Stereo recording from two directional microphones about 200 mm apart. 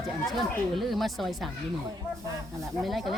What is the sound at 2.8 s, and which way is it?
Speech, centre (ahead or behind).